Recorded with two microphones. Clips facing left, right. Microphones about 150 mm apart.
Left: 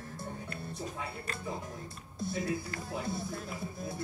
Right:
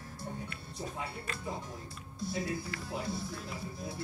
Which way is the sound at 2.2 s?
50° left (ahead or behind).